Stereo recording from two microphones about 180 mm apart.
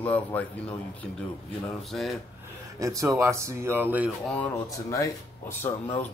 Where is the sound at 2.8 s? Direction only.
15° right (ahead or behind).